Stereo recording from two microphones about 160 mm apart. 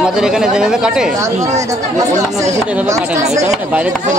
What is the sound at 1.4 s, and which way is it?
Speech, 20° right (ahead or behind).